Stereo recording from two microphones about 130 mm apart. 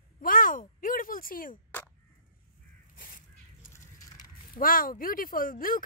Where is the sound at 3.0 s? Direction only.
90° left.